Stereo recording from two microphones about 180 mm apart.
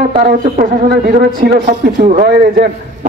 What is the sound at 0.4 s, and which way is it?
A man's voice, 50° right (ahead or behind).